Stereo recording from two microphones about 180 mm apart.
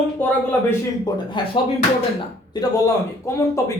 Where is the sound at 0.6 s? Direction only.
25° left (ahead or behind).